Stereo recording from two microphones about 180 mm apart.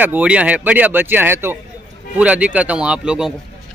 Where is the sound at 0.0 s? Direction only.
10° right (ahead or behind).